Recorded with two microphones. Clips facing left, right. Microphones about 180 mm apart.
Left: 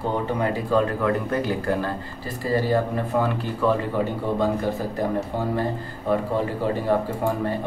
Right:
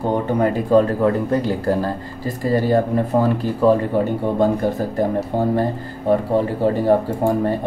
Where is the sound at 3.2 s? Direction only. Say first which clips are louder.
Right 6 dB; 40° right (ahead or behind).